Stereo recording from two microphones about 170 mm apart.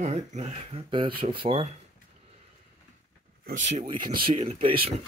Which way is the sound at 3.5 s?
45° right (ahead or behind).